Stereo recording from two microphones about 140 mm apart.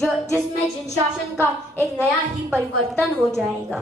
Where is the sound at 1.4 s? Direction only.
20° right (ahead or behind).